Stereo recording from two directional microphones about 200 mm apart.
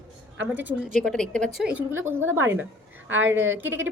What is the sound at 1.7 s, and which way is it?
Speech, 10° right (ahead or behind).